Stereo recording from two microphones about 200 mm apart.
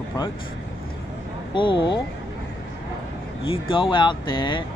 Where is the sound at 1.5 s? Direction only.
25° left (ahead or behind).